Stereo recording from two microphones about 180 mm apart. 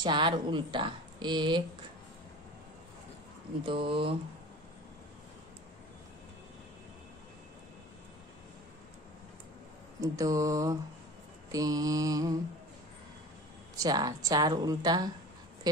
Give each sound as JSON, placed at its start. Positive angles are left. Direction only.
{"t": 0.0, "sound": "a woman's voice", "side_deg": -25}
{"t": 3.6, "sound": "a woman's voice", "side_deg": -30}
{"t": 10.1, "sound": "mantra", "side_deg": -20}
{"t": 11.5, "sound": "a woman's voice", "side_deg": -20}
{"t": 13.7, "sound": "a woman's voice", "side_deg": -20}